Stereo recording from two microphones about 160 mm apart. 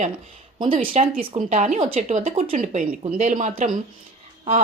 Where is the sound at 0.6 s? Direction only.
30° right (ahead or behind).